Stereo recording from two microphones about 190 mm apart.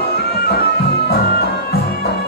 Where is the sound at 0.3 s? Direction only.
55° left (ahead or behind).